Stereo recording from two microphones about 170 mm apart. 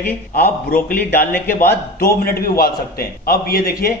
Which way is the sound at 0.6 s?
55° left (ahead or behind).